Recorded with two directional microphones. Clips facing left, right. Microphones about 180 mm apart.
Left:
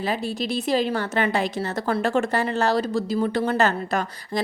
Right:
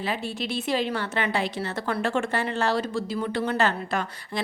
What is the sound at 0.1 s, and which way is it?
A woman's voice, 40° left (ahead or behind).